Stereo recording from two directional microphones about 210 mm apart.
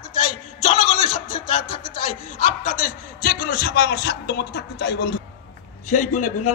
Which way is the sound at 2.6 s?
40° left (ahead or behind).